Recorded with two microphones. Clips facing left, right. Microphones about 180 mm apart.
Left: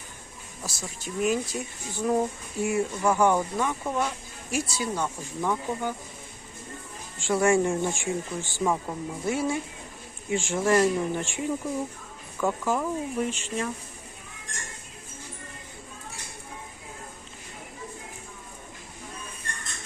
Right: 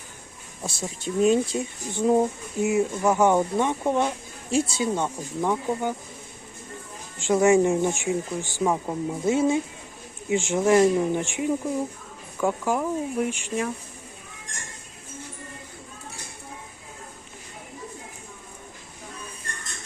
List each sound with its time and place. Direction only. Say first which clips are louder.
0.6 s speech: right 6 dB; 25° right (ahead or behind)
7.2 s speech: right 4 dB; 20° right (ahead or behind)